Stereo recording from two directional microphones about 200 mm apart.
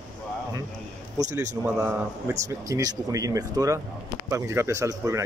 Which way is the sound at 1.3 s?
10° right (ahead or behind).